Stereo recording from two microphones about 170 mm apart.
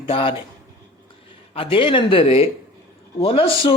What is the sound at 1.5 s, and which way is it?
Speech, 30° left (ahead or behind).